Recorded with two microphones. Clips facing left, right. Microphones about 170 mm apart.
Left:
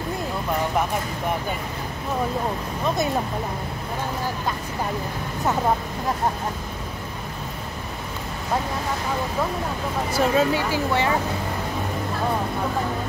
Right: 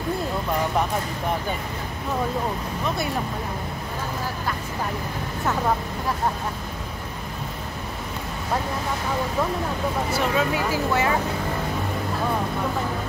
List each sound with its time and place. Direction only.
10.1 s speech: 30° left (ahead or behind)